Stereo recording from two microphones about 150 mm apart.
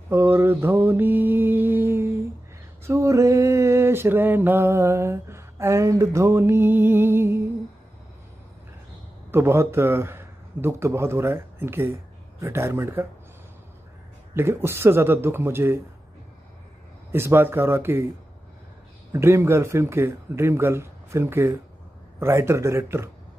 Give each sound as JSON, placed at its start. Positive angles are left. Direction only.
{"t": 0.1, "sound": "mantra", "side_deg": -15}
{"t": 2.8, "sound": "a sound", "side_deg": -20}
{"t": 9.3, "sound": "a man's voice", "side_deg": -15}
{"t": 14.3, "sound": "a man's voice", "side_deg": -15}
{"t": 17.1, "sound": "a man's voice", "side_deg": -15}
{"t": 19.1, "sound": "a man's voice", "side_deg": -20}